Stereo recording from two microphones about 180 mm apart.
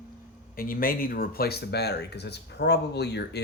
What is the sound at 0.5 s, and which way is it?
Speech, 50° left (ahead or behind).